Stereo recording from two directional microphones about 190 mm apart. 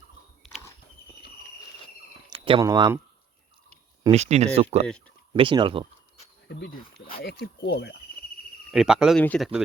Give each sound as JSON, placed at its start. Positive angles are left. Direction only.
{"t": 2.3, "sound": "speech", "side_deg": -25}
{"t": 4.1, "sound": "speech", "side_deg": -35}
{"t": 4.9, "sound": "speech", "side_deg": 5}
{"t": 5.3, "sound": "speech", "side_deg": -25}
{"t": 7.2, "sound": "speech", "side_deg": 60}
{"t": 8.7, "sound": "speech", "side_deg": 0}